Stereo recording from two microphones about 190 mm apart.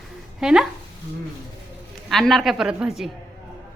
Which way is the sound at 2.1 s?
Centre (ahead or behind).